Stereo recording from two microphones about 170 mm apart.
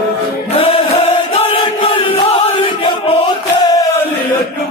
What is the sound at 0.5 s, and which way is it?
Chant, 35° left (ahead or behind).